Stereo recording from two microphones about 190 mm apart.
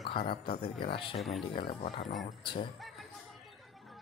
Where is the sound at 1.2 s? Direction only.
Centre (ahead or behind).